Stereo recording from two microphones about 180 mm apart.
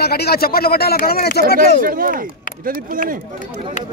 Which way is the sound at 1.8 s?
50° right (ahead or behind).